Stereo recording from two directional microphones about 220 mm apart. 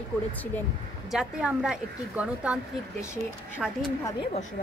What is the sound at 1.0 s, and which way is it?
A woman's voice, 5° right (ahead or behind).